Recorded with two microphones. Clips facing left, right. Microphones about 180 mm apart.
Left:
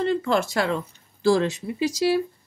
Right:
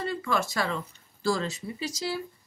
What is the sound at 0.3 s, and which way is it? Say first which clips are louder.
Speech: left 6 dB; 65° left (ahead or behind).